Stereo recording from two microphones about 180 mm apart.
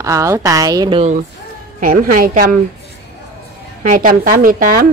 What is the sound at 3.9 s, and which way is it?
Speech, 50° right (ahead or behind).